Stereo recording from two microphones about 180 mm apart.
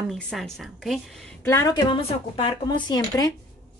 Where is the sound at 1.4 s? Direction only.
15° left (ahead or behind).